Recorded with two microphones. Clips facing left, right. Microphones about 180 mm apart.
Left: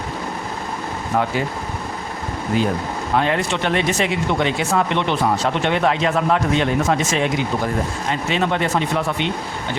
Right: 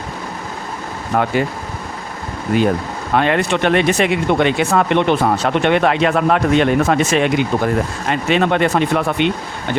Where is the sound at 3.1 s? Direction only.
65° right (ahead or behind).